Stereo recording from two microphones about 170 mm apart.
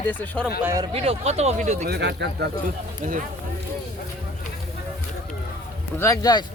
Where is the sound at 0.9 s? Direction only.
40° right (ahead or behind).